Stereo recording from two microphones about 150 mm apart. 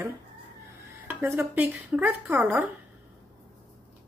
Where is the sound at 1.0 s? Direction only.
15° right (ahead or behind).